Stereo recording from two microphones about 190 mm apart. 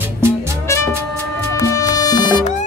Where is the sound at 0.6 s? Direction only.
15° left (ahead or behind).